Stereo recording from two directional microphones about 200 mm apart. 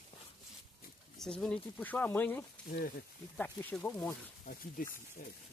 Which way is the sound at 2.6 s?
45° left (ahead or behind).